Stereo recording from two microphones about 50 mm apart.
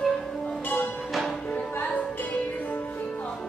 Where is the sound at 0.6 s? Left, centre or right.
Left.